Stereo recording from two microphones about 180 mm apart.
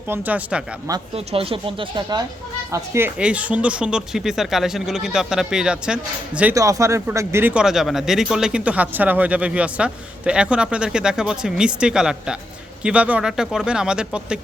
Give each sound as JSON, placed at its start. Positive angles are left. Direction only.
{"t": 0.1, "sound": "speech", "side_deg": -10}
{"t": 1.1, "sound": "speech", "side_deg": -35}
{"t": 6.5, "sound": "speech", "side_deg": -15}